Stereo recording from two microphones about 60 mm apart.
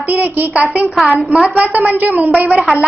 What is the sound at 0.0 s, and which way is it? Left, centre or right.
Speech, right.